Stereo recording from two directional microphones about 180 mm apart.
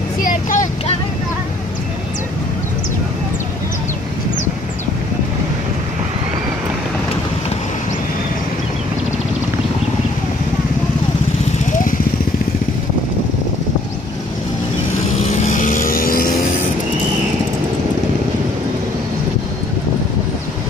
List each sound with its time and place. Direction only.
0.2 s vehicle: 50° left (ahead or behind)
15.4 s vehicle: 45° left (ahead or behind)